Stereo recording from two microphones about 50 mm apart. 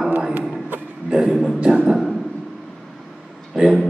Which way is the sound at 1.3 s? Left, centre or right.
Centre.